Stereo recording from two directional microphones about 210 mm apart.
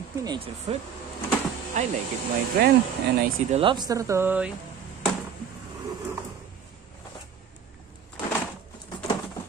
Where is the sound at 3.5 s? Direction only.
20° right (ahead or behind).